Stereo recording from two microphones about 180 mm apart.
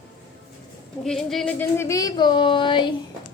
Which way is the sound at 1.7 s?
15° left (ahead or behind).